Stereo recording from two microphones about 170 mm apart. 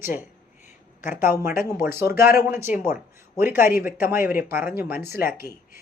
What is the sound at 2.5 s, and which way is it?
Speech, 15° right (ahead or behind).